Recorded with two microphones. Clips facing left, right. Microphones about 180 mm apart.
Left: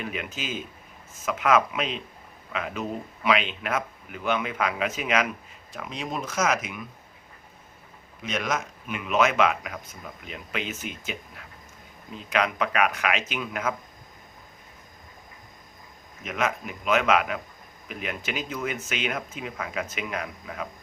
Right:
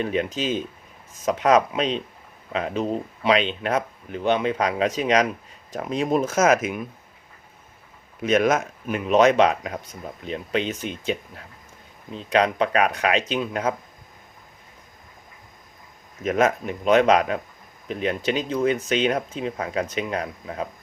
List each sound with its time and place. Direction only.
0.0 s speech: 35° right (ahead or behind)
8.2 s speech: 50° right (ahead or behind); by 13.7 s 30° right (ahead or behind)
16.2 s speech: 40° right (ahead or behind)